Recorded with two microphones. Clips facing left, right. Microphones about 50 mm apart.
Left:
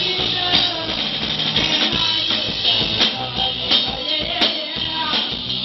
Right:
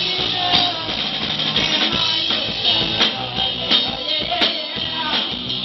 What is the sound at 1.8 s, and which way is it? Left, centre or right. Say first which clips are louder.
Music: even; centre.